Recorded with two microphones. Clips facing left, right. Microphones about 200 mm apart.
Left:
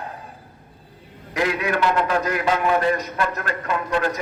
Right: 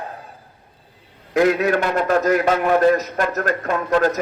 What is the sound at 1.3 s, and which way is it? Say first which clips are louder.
A man's voice: right 6 dB; 45° right (ahead or behind).